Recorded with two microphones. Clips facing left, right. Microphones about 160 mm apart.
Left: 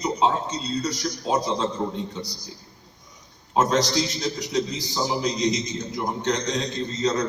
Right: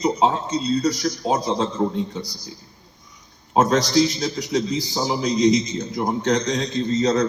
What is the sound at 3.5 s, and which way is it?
Speech, 55° right (ahead or behind).